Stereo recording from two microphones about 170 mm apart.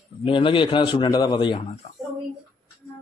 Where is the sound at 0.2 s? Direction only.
30° left (ahead or behind).